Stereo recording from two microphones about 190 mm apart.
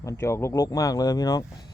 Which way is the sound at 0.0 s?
15° left (ahead or behind).